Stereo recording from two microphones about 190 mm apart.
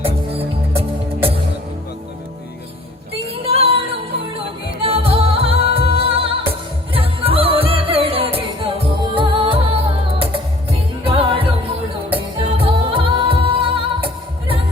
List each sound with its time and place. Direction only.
3.2 s female singing: 30° right (ahead or behind)
4.8 s music: 30° right (ahead or behind)